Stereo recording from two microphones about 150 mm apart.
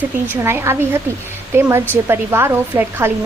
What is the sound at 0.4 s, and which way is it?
A woman's voice, 15° right (ahead or behind).